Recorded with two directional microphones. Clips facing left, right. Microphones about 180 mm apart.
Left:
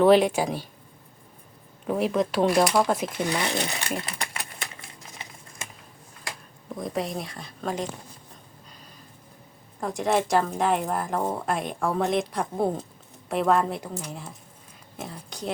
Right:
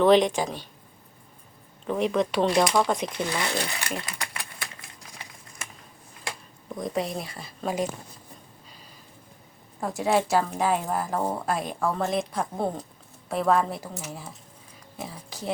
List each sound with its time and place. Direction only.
0.0 s speech: 5° left (ahead or behind)
1.9 s speech: 5° left (ahead or behind)
3.2 s speech: 20° left (ahead or behind)
4.0 s a sound: 25° left (ahead or behind)
6.7 s speech: centre (ahead or behind)
9.8 s speech: 5° right (ahead or behind)